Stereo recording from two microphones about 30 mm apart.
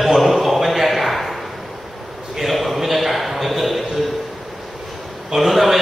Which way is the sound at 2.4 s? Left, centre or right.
Centre.